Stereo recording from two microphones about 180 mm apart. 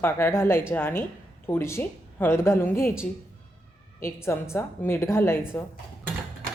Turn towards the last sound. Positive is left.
turn(degrees=15)  # may be behind; listen again after turning